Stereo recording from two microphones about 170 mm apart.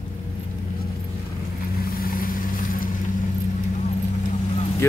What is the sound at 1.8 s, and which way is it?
Vehicle, 55° left (ahead or behind).